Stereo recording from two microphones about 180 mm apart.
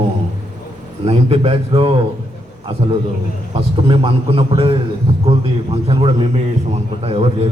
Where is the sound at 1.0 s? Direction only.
35° right (ahead or behind).